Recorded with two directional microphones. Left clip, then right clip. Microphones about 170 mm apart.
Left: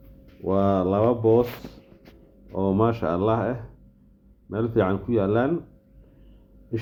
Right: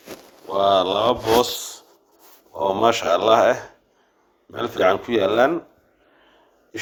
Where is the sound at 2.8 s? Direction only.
30° right (ahead or behind).